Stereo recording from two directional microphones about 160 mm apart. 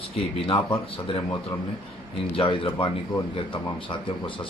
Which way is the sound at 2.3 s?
35° left (ahead or behind).